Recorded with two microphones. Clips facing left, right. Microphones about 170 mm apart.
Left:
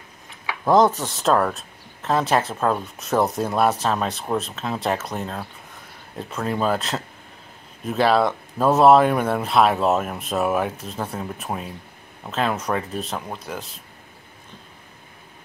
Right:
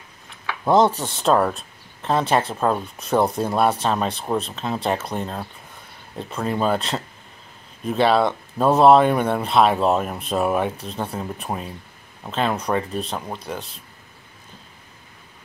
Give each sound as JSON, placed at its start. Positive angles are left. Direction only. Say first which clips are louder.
{"t": 0.7, "sound": "mechanisms", "louder": "even", "side_deg": -25}
{"t": 0.9, "sound": "speech", "louder": "right 1 dB", "side_deg": 0}